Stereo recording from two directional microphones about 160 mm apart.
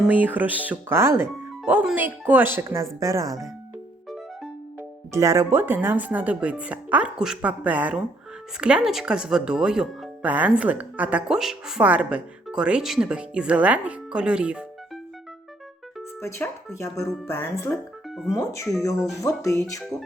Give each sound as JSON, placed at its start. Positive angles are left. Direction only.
{"t": 0.0, "sound": "speech", "side_deg": -10}
{"t": 4.8, "sound": "speech", "side_deg": -15}
{"t": 16.2, "sound": "speech", "side_deg": 15}